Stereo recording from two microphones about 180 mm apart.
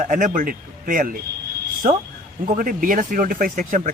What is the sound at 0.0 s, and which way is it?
Speech, 45° right (ahead or behind).